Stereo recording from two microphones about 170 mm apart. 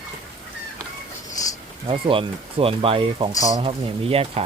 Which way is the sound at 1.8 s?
30° right (ahead or behind).